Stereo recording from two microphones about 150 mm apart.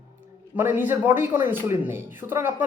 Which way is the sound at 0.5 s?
15° right (ahead or behind).